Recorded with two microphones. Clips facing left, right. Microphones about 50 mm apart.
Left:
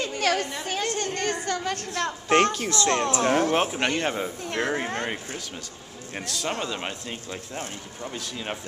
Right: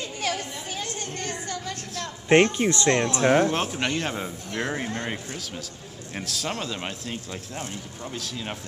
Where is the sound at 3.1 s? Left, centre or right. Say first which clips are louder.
Right 3 dB; right.